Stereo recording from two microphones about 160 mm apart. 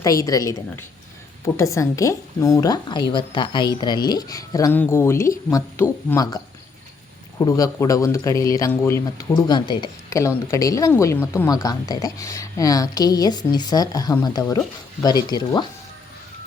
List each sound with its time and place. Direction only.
0.0 s speech: 20° left (ahead or behind)